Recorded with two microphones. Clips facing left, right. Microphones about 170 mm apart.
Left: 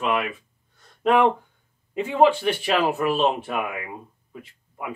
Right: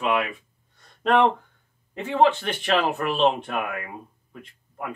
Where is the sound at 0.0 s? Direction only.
Centre (ahead or behind).